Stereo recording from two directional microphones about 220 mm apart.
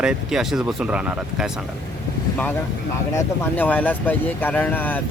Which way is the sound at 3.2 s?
10° left (ahead or behind).